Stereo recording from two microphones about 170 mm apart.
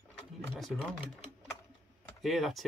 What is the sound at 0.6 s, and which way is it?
Speech, centre (ahead or behind).